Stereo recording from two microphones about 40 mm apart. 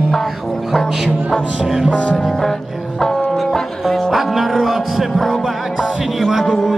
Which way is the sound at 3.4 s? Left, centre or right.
Centre.